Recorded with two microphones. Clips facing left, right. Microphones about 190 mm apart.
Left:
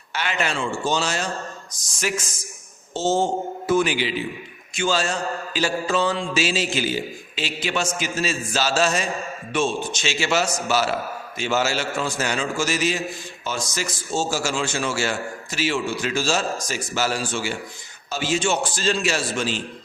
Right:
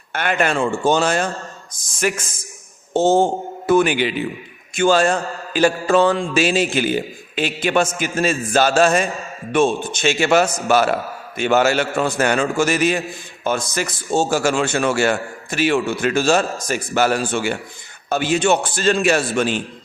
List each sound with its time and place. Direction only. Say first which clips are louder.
0.1 s a man's voice: right 6 dB; 55° right (ahead or behind)
2.9 s mantra: right 6 dB; 55° right (ahead or behind)